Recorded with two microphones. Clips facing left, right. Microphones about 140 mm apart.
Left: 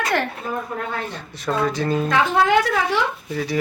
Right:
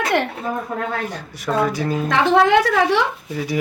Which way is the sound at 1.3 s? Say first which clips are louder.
Right 2 dB; 15° right (ahead or behind).